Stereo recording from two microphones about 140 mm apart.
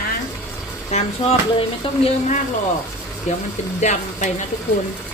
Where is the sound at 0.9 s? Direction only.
50° left (ahead or behind).